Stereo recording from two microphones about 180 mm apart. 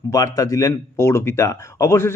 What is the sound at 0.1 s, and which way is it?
Speech, 20° left (ahead or behind).